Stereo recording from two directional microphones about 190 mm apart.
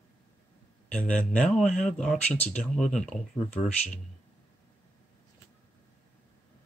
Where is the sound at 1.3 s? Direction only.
5° left (ahead or behind).